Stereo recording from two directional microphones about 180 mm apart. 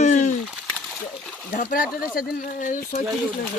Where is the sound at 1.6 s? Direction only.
50° left (ahead or behind).